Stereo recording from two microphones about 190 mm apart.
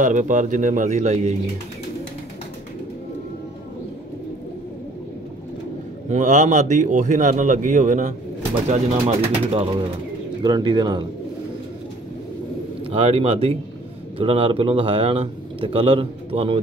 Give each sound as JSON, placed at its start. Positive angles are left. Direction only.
{"t": 0.0, "sound": "a man's voice", "side_deg": -40}
{"t": 6.0, "sound": "a man's voice", "side_deg": -40}
{"t": 12.9, "sound": "a man's voice", "side_deg": -30}